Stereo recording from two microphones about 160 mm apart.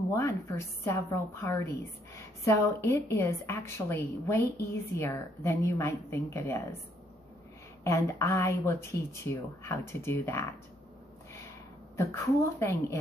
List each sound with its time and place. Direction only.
0.1 s a woman's voice: 20° left (ahead or behind)
7.8 s a woman's voice: 20° left (ahead or behind)
12.0 s a woman's voice: 15° left (ahead or behind)